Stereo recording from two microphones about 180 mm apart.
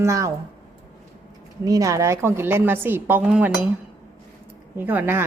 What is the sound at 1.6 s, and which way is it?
A woman's voice, 20° right (ahead or behind).